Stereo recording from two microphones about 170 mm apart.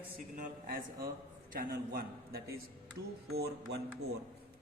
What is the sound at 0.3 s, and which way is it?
A man's voice, 50° right (ahead or behind).